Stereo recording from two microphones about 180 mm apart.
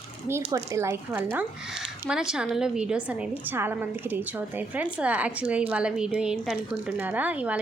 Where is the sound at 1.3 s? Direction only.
5° right (ahead or behind).